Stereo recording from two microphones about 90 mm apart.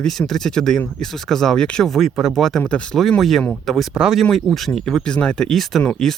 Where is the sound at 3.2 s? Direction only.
Centre (ahead or behind).